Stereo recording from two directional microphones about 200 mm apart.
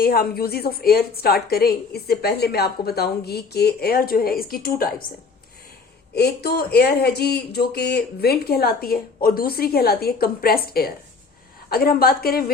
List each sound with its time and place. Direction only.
0.0 s a woman's voice: 50° left (ahead or behind)
6.1 s a woman's voice: 50° left (ahead or behind)